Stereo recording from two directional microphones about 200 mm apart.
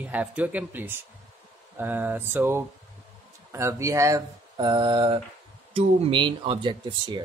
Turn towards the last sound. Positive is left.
turn(degrees=-25)  # may be behind; listen again after turning